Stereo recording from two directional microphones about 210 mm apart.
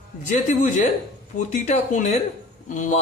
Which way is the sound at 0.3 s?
35° left (ahead or behind).